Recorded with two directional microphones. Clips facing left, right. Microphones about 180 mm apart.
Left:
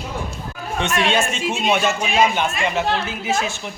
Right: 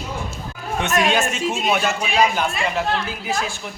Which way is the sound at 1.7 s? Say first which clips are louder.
Left 3 dB; centre (ahead or behind).